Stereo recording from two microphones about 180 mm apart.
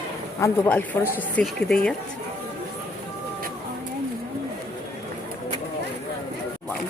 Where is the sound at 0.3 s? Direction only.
15° left (ahead or behind).